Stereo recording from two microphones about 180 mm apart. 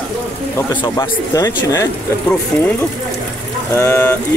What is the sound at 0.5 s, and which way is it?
Speech, 20° left (ahead or behind).